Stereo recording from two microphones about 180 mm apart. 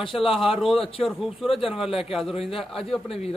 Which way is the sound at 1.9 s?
30° left (ahead or behind).